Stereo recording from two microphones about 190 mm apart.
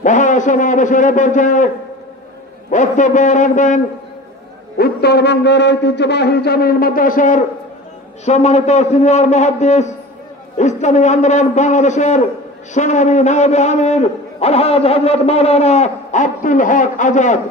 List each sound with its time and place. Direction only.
0.0 s a man's voice: 40° left (ahead or behind)
2.7 s a man's voice: 40° left (ahead or behind)
4.7 s a man's voice: 55° left (ahead or behind); by 17.4 s 40° left (ahead or behind)